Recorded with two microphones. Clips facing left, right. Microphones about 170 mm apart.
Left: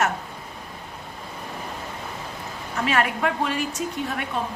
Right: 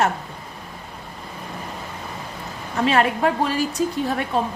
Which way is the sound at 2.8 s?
30° right (ahead or behind).